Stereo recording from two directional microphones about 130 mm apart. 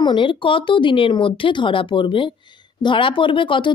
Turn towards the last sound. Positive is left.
turn(degrees=40)  # may be behind; listen again after turning